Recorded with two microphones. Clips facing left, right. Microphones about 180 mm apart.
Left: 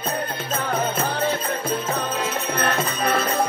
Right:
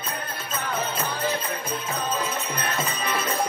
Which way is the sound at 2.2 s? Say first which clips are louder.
Left 5 dB; 60° left (ahead or behind).